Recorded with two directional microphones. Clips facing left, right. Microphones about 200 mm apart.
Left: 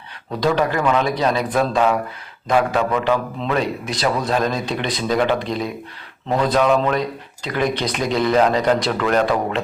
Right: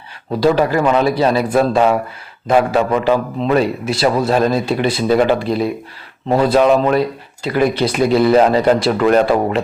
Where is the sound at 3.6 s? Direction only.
5° right (ahead or behind).